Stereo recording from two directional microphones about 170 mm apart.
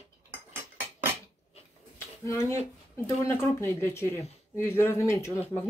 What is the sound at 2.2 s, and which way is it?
Speech, 15° left (ahead or behind).